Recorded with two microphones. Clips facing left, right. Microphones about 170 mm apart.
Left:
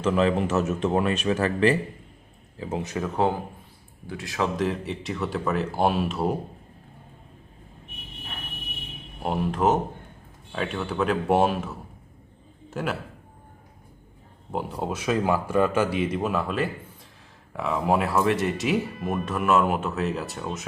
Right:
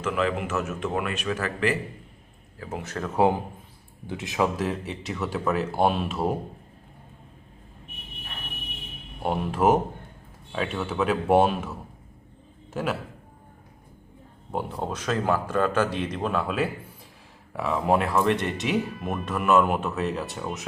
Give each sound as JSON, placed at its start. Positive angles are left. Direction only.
{"t": 0.0, "sound": "speech", "side_deg": 30}
{"t": 4.1, "sound": "speech", "side_deg": -20}
{"t": 4.5, "sound": "speech", "side_deg": 0}
{"t": 9.2, "sound": "speech", "side_deg": 0}
{"t": 12.7, "sound": "speech", "side_deg": 0}
{"t": 14.5, "sound": "speech", "side_deg": 5}